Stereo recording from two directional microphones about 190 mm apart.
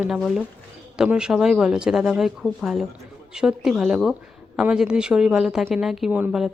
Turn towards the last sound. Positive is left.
turn(degrees=-5)  # may be behind; listen again after turning